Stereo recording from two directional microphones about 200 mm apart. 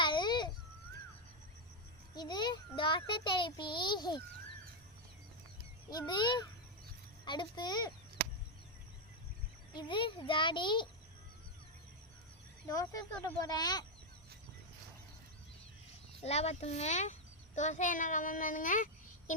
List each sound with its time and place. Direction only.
0.0 s a sound: 20° left (ahead or behind)
2.1 s child singing: 20° left (ahead or behind)
5.9 s a child's voice: 20° left (ahead or behind)
9.7 s a child's voice: 25° left (ahead or behind)
12.6 s a child's voice: 15° left (ahead or behind)
16.2 s a child's voice: 30° left (ahead or behind)